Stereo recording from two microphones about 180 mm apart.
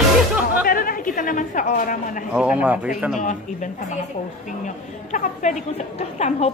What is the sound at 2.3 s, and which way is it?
Speech, 5° right (ahead or behind).